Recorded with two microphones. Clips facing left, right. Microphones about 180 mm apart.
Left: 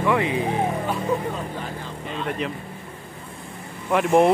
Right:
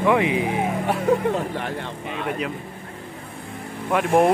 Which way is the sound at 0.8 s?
75° right (ahead or behind).